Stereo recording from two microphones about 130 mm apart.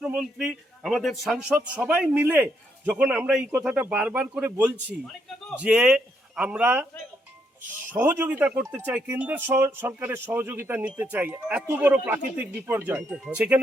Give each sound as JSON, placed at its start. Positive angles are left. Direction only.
{"t": 0.0, "sound": "a man's voice", "side_deg": -5}
{"t": 7.9, "sound": "speech", "side_deg": -15}